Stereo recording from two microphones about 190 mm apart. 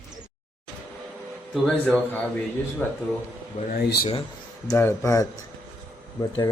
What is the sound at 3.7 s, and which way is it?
Speech, 55° left (ahead or behind).